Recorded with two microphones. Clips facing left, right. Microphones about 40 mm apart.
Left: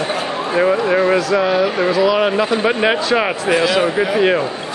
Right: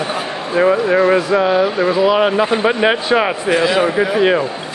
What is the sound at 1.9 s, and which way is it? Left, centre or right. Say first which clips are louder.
Speech: right 1 dB; right.